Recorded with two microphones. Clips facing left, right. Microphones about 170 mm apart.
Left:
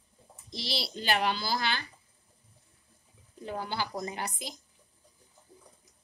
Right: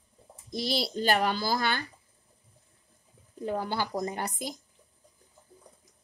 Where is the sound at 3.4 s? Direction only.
45° right (ahead or behind).